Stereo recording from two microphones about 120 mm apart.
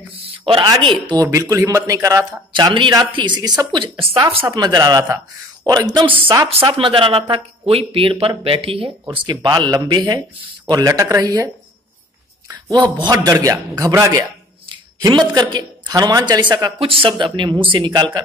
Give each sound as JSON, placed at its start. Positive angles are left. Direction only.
{"t": 0.1, "sound": "speech", "side_deg": -45}
{"t": 1.2, "sound": "a man's voice", "side_deg": -25}
{"t": 2.5, "sound": "speech", "side_deg": -40}
{"t": 4.5, "sound": "speech", "side_deg": -35}
{"t": 9.2, "sound": "a man's voice", "side_deg": -35}
{"t": 12.7, "sound": "speech", "side_deg": -40}
{"t": 16.8, "sound": "speech", "side_deg": -50}